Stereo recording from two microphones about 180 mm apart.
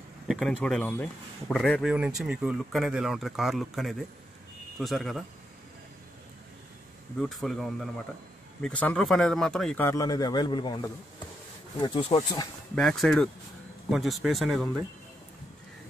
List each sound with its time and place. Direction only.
0.3 s speech: centre (ahead or behind)
7.2 s speech: centre (ahead or behind); by 12.4 s 25° left (ahead or behind)
12.7 s speech: centre (ahead or behind)